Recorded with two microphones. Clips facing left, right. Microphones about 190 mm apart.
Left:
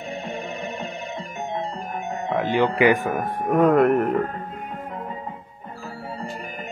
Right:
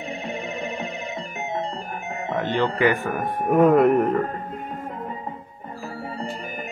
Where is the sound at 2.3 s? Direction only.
10° left (ahead or behind).